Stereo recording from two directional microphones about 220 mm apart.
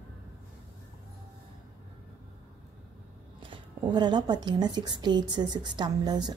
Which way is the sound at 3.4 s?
20° right (ahead or behind).